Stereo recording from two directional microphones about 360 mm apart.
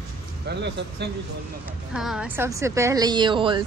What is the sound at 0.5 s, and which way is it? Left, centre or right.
Speech, right.